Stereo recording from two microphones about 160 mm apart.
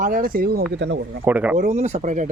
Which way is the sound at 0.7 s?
90° right.